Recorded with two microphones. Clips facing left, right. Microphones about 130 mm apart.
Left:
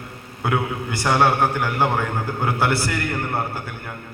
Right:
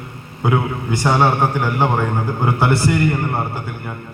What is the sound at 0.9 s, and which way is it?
A man's voice, 15° right (ahead or behind).